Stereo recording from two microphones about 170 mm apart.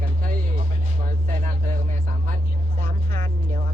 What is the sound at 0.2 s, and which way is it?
Music, 55° right (ahead or behind).